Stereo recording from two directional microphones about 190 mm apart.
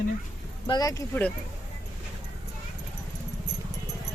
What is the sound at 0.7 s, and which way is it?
Speech, 20° left (ahead or behind).